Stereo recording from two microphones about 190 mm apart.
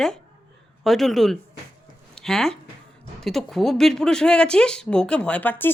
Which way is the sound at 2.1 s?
Centre (ahead or behind).